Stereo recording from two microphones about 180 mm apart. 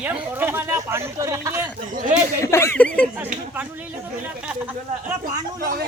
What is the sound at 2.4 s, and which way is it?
Speech, 15° left (ahead or behind).